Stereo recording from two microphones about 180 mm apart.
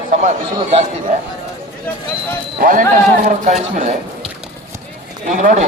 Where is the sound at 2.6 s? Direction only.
50° right (ahead or behind).